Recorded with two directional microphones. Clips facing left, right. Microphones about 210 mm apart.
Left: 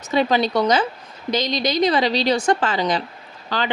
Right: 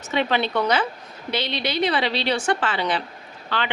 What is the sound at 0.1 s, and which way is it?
A woman's voice, 35° left (ahead or behind).